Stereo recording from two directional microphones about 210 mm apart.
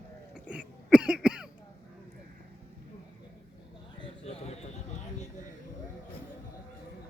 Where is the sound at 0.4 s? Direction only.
5° right (ahead or behind).